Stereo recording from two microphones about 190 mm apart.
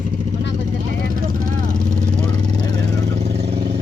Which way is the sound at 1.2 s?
40° right (ahead or behind).